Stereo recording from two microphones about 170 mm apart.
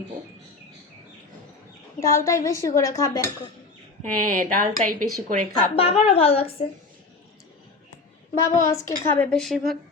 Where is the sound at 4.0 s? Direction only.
50° right (ahead or behind).